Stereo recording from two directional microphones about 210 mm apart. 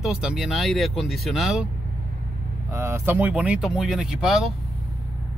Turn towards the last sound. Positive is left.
turn(degrees=-5)  # may be behind; listen again after turning